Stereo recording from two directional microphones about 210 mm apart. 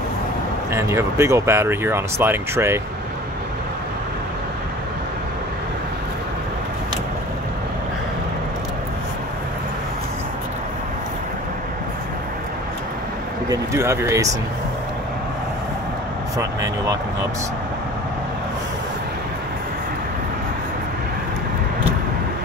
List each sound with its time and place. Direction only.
0.7 s speech: 15° right (ahead or behind)
13.5 s speech: 15° right (ahead or behind)